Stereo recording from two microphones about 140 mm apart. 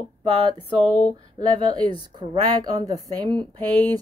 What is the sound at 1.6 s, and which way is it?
A woman's voice, 35° right (ahead or behind).